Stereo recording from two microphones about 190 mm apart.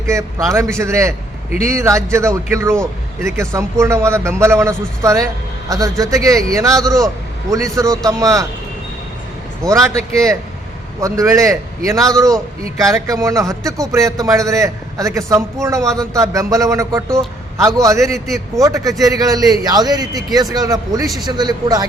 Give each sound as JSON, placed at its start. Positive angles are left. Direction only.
{"t": 0.0, "sound": "a man's voice", "side_deg": -15}
{"t": 6.8, "sound": "a man's voice", "side_deg": 0}
{"t": 7.5, "sound": "speech", "side_deg": -15}
{"t": 9.6, "sound": "a man's voice", "side_deg": -15}